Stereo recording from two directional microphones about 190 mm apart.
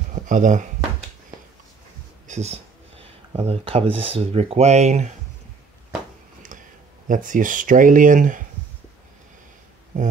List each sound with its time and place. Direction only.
0.1 s speech: 40° right (ahead or behind)
2.2 s speech: 35° right (ahead or behind)
7.1 s speech: 45° right (ahead or behind)